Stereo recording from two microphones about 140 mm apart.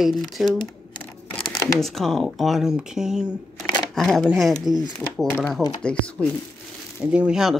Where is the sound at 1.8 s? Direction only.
Centre (ahead or behind).